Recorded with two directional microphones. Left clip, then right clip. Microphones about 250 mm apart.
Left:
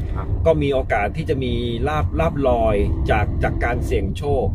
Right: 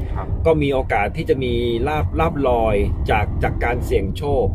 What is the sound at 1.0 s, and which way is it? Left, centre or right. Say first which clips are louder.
Speech: right 3 dB; centre.